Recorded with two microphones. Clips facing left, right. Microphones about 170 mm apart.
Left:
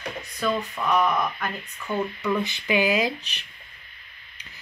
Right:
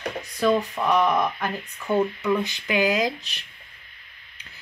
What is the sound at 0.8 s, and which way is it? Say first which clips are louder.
Speech: right 3 dB; 20° right (ahead or behind).